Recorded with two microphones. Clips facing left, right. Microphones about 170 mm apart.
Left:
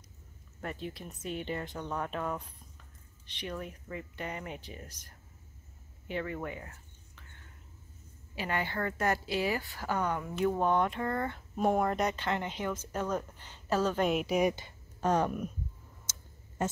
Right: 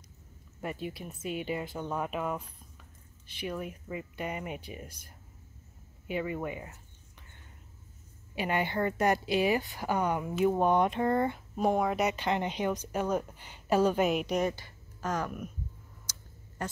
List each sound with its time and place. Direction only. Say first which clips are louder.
0.6 s a woman's voice: right 3 dB; 10° right (ahead or behind)
8.4 s a woman's voice: right 4 dB; 20° right (ahead or behind)
11.3 s a woman's voice: right 1 dB; centre (ahead or behind)
14.5 s speech: left 2 dB; 25° left (ahead or behind)
16.1 s a sound: even; 25° left (ahead or behind)